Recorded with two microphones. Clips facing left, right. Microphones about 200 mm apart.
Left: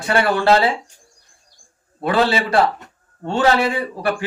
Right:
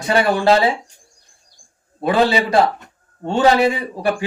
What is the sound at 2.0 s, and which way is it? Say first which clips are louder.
A man's voice: right 2 dB; 15° right (ahead or behind).